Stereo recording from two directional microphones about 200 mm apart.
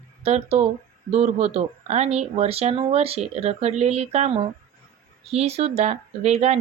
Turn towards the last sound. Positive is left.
turn(degrees=-30)  # may be behind; listen again after turning